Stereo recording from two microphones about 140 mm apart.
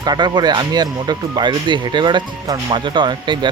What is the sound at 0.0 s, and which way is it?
Speech, 30° right (ahead or behind).